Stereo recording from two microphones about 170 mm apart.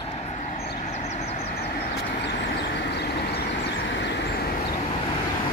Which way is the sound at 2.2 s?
80° left.